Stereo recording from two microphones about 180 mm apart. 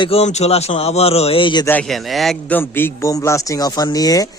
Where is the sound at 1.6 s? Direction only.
5° left (ahead or behind).